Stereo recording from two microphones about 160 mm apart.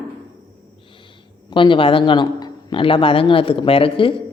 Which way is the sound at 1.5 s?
30° left (ahead or behind).